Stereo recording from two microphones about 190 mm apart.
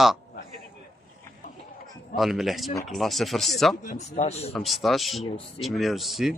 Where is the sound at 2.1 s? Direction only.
Centre (ahead or behind).